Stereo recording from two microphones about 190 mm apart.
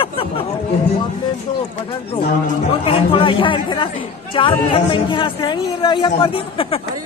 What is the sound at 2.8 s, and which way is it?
Speech, 25° left (ahead or behind).